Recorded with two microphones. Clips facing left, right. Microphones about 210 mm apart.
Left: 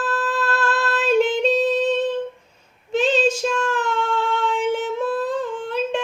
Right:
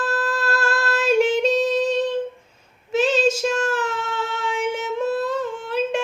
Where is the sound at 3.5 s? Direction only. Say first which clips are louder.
Even; 40° right (ahead or behind).